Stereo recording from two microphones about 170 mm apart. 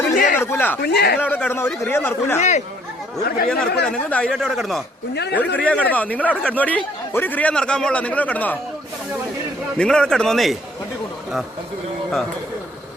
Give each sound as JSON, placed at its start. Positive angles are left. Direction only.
{"t": 0.1, "sound": "a sound", "side_deg": 50}
{"t": 0.3, "sound": "a man's voice", "side_deg": 15}
{"t": 0.8, "sound": "speech", "side_deg": 70}
{"t": 1.2, "sound": "a man's voice", "side_deg": 10}
{"t": 2.4, "sound": "speech", "side_deg": 45}
{"t": 3.2, "sound": "speech", "side_deg": 60}
{"t": 3.8, "sound": "speech", "side_deg": 5}
{"t": 5.1, "sound": "speech", "side_deg": 75}
{"t": 5.5, "sound": "a man's voice", "side_deg": 5}
{"t": 9.7, "sound": "speech", "side_deg": 5}